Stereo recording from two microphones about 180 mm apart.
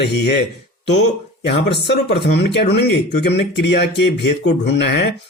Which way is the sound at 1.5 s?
70° left (ahead or behind).